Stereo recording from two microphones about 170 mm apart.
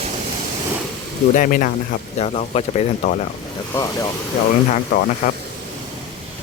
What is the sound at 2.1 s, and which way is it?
Speech, 40° left (ahead or behind).